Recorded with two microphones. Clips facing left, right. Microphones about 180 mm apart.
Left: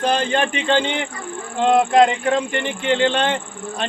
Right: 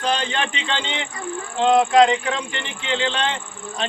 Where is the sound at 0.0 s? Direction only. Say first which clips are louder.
Left 4 dB; 50° left (ahead or behind).